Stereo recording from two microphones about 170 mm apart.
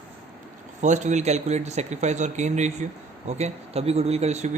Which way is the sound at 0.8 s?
45° right (ahead or behind).